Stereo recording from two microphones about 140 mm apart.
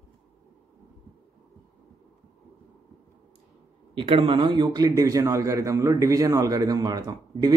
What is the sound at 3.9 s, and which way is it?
A man's voice, 40° right (ahead or behind).